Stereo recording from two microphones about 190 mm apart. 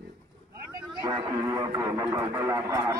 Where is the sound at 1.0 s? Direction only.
20° right (ahead or behind).